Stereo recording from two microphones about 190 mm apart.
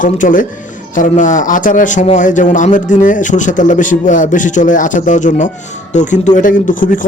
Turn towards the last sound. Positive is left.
turn(degrees=45)  # may be behind; listen again after turning